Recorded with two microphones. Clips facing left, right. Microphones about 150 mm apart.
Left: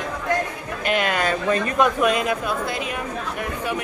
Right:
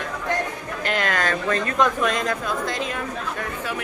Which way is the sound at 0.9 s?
15° left (ahead or behind).